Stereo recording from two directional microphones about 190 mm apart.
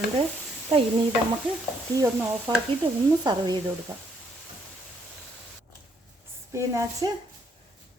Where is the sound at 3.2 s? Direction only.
20° right (ahead or behind).